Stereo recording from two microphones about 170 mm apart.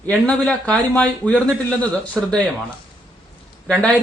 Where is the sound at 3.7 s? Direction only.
10° left (ahead or behind).